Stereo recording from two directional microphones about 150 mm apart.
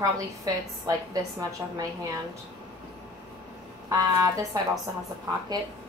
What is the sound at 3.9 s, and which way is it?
Speech, 25° right (ahead or behind).